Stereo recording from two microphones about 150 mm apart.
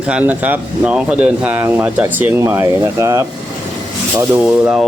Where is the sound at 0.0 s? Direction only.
10° right (ahead or behind).